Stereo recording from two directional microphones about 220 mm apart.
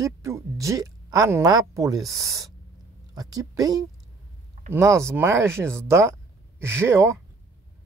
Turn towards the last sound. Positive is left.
turn(degrees=-10)  # may be behind; listen again after turning